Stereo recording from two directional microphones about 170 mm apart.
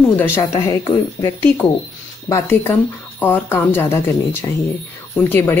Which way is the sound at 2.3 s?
10° left (ahead or behind).